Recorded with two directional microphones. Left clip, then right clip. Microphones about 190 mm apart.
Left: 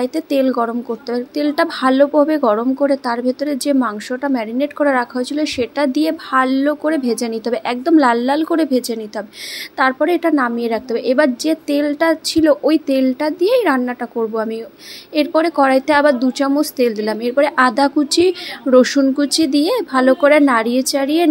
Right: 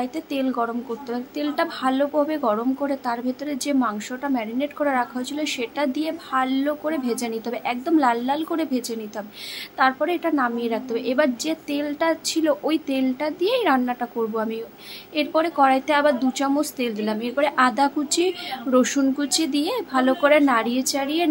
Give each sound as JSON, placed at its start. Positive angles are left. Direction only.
{"t": 0.0, "sound": "a woman's voice", "side_deg": 30}